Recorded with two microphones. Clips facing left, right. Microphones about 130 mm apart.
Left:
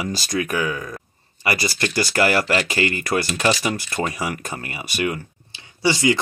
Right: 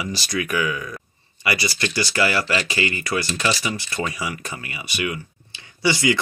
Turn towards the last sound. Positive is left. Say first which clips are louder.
# left 1 dB
turn(degrees=30)  # may be behind; listen again after turning